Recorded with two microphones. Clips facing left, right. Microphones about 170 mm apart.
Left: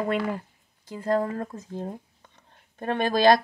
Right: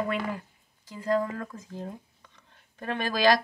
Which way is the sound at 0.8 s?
50° left (ahead or behind).